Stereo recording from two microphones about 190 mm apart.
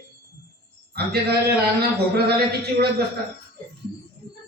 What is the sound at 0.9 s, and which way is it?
A man's voice, 55° right (ahead or behind).